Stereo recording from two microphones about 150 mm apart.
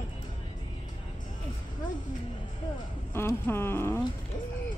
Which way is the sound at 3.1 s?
15° left (ahead or behind).